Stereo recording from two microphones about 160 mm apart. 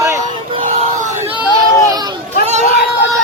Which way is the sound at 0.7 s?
45° right (ahead or behind).